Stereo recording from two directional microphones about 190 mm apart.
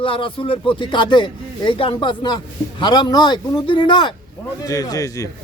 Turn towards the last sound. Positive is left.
turn(degrees=15)  # may be behind; listen again after turning